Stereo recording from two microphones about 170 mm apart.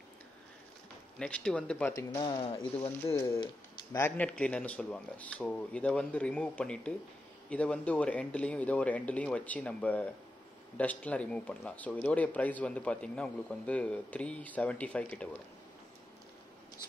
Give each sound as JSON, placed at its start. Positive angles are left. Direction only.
{"t": 1.2, "sound": "speech", "side_deg": 5}
{"t": 3.2, "sound": "speech", "side_deg": 20}